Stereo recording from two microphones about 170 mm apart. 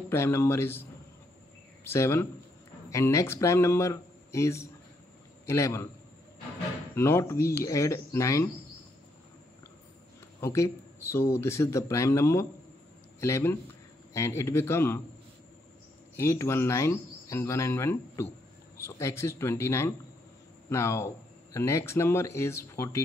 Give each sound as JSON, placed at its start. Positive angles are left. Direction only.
{"t": 0.1, "sound": "speech", "side_deg": 15}
{"t": 1.9, "sound": "speech", "side_deg": 15}
{"t": 7.0, "sound": "speech", "side_deg": 15}
{"t": 10.4, "sound": "speech", "side_deg": 15}
{"t": 16.2, "sound": "speech", "side_deg": 15}